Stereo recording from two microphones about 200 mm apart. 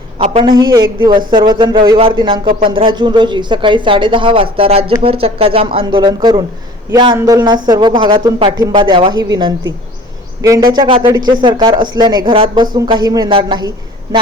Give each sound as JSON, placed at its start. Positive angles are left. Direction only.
{"t": 0.2, "sound": "speech", "side_deg": -25}